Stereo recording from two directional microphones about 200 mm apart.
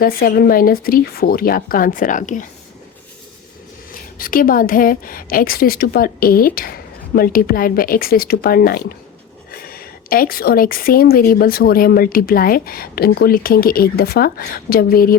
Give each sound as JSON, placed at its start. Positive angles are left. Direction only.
{"t": 0.0, "sound": "speech", "side_deg": 45}
{"t": 4.2, "sound": "speech", "side_deg": 45}